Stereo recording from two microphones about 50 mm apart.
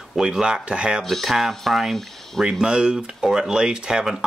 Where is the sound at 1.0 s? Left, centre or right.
Centre.